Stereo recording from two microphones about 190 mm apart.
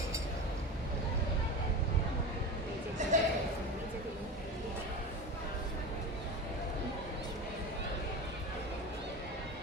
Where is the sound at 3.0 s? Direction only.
40° right (ahead or behind).